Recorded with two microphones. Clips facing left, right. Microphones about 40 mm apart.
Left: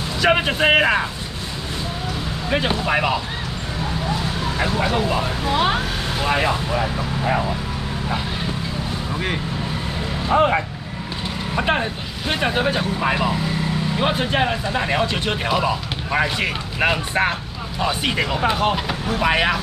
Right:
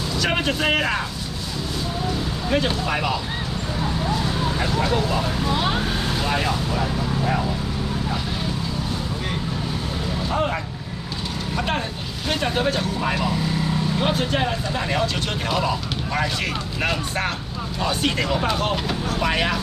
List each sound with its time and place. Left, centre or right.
0.2 s speech: centre
2.5 s speech: left
4.6 s speech: left
10.2 s speech: left